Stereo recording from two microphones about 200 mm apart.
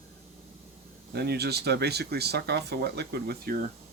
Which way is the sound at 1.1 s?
55° right (ahead or behind).